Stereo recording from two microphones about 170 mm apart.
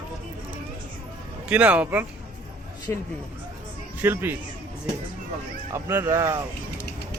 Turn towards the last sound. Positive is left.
turn(degrees=-15)  # may be behind; listen again after turning